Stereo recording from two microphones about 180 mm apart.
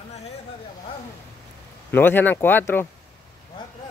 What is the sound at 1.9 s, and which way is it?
Speech, 10° left (ahead or behind).